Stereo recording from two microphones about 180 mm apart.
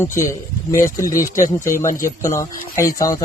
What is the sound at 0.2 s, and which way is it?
Speech, 15° left (ahead or behind).